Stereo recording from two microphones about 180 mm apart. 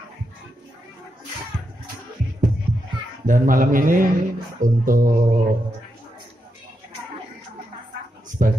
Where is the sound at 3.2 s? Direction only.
50° right (ahead or behind).